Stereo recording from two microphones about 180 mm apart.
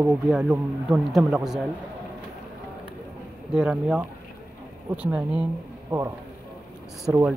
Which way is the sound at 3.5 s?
5° right (ahead or behind).